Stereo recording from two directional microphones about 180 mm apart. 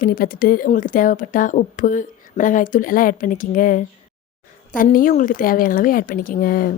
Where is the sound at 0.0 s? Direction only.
55° left (ahead or behind).